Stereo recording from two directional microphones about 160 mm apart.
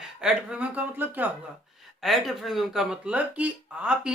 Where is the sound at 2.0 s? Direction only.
Centre (ahead or behind).